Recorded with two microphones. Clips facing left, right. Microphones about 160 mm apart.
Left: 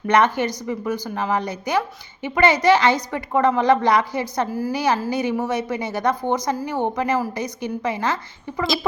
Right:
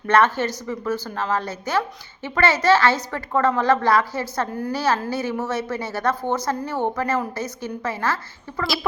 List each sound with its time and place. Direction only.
0.1 s a woman's voice: 15° left (ahead or behind)
4.4 s a woman's voice: 5° left (ahead or behind)
4.7 s a woman's voice: 15° left (ahead or behind)